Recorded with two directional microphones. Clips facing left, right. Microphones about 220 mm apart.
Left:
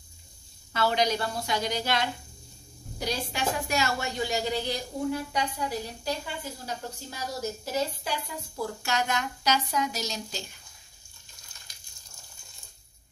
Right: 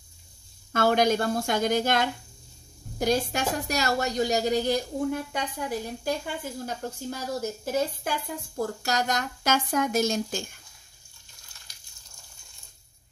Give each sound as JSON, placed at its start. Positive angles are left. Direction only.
{"t": 0.7, "sound": "speech", "side_deg": -50}